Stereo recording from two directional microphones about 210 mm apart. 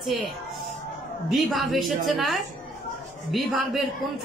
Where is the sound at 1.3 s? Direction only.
Centre (ahead or behind).